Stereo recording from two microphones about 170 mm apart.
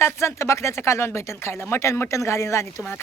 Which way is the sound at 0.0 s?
15° left (ahead or behind).